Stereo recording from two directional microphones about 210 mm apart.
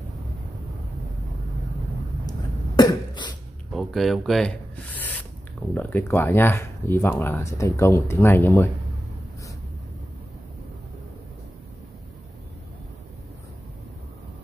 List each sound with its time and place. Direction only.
2.2 s cough: 20° left (ahead or behind)
3.7 s speech: centre (ahead or behind)